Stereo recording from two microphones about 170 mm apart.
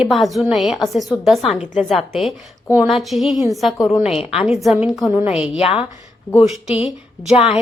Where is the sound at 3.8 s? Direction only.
20° left (ahead or behind).